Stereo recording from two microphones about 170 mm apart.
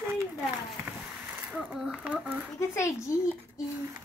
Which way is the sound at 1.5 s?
5° right (ahead or behind).